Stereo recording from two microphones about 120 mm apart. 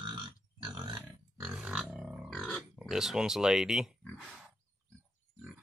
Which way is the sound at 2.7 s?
5° right (ahead or behind).